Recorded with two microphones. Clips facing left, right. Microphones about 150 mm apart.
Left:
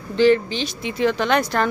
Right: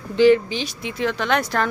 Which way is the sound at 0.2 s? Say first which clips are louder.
Right 1 dB; 10° right (ahead or behind).